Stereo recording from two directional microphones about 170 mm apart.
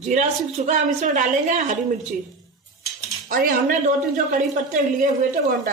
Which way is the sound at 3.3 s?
50° right (ahead or behind).